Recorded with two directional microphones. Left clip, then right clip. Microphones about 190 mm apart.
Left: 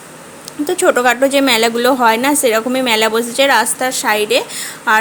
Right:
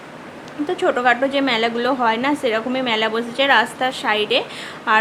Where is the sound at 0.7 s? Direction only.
30° left (ahead or behind).